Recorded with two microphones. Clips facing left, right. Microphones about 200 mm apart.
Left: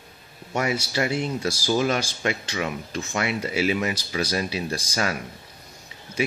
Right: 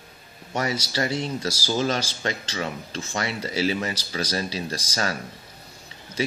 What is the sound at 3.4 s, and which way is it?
Speech, 35° right (ahead or behind).